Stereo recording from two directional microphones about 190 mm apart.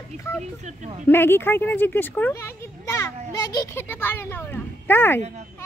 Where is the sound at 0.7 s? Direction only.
40° right (ahead or behind).